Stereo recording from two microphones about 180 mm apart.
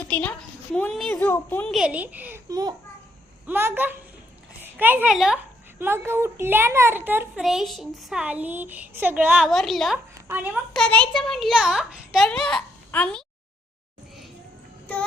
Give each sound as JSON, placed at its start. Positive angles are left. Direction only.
{"t": 0.1, "sound": "a woman's voice", "side_deg": 5}
{"t": 1.7, "sound": "a child's voice", "side_deg": -5}
{"t": 2.5, "sound": "a child's voice", "side_deg": -20}
{"t": 10.2, "sound": "a child's voice", "side_deg": -10}
{"t": 10.8, "sound": "a child's voice", "side_deg": 5}